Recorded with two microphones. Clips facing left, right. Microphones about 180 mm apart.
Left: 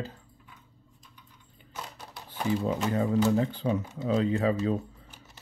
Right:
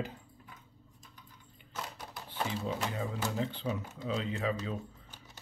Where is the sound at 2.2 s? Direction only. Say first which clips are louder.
Left 7 dB; 50° left (ahead or behind).